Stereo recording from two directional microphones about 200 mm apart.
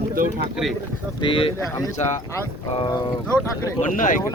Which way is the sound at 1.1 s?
25° left (ahead or behind).